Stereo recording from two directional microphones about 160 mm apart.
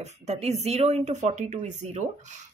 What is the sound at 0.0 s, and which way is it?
Speech, 40° right (ahead or behind).